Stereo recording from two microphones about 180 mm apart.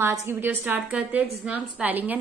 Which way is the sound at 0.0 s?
15° right (ahead or behind).